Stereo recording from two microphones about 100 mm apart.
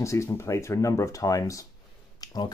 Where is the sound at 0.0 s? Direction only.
30° left (ahead or behind).